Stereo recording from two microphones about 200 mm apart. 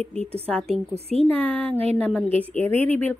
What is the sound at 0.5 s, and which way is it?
Speech, 5° left (ahead or behind).